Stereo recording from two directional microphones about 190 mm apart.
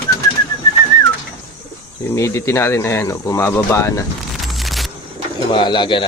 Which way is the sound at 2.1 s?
15° left (ahead or behind).